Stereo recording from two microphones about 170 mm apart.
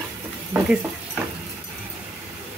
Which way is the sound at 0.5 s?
15° right (ahead or behind).